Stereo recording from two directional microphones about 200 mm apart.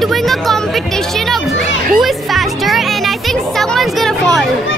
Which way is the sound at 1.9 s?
Centre (ahead or behind).